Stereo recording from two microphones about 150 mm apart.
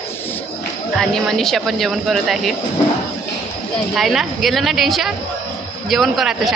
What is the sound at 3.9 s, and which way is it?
A woman's voice, centre (ahead or behind).